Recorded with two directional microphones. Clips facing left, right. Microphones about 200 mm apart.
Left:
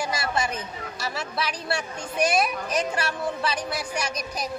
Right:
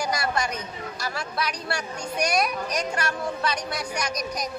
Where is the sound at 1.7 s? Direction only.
5° left (ahead or behind).